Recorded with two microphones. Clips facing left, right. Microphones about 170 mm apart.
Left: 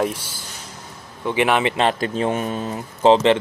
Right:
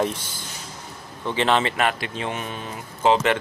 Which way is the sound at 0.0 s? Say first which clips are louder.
Left 2 dB; 10° left (ahead or behind).